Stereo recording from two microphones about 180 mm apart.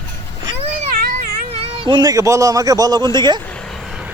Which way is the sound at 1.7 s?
25° right (ahead or behind).